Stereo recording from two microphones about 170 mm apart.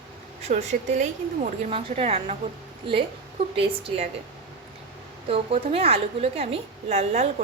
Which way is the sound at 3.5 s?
35° right (ahead or behind).